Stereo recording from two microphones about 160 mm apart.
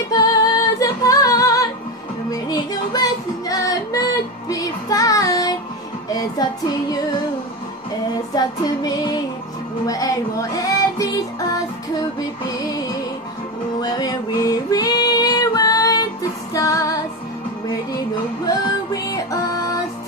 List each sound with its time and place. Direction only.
0.1 s music: 20° left (ahead or behind)
8.4 s music: 25° left (ahead or behind)
12.5 s music: 25° left (ahead or behind)
13.7 s female singing: 25° left (ahead or behind)
18.5 s music: 25° left (ahead or behind)